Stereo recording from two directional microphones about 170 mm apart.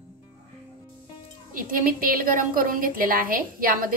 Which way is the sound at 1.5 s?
55° right (ahead or behind).